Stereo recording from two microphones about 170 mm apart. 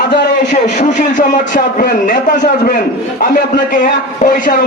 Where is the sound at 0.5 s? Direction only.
45° left (ahead or behind).